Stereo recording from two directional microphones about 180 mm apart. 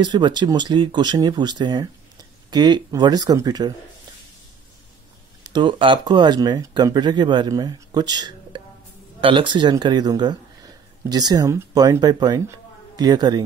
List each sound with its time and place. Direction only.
0.0 s speech: 25° right (ahead or behind)
5.4 s speech: 25° right (ahead or behind)